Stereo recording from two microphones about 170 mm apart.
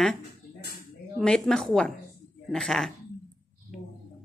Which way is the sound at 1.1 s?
5° left (ahead or behind).